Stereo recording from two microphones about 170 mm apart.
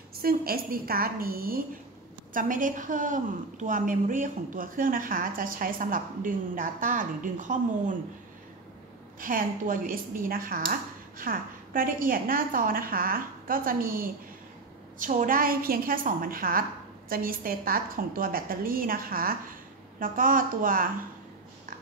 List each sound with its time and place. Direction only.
0.1 s a woman's voice: 60° right (ahead or behind)
9.2 s speech: 55° right (ahead or behind)